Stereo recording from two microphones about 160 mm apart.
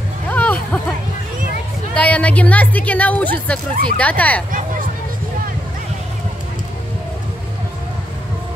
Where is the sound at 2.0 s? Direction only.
10° left (ahead or behind).